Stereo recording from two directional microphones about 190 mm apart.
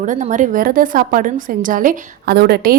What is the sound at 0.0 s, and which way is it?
A woman's voice, 40° right (ahead or behind).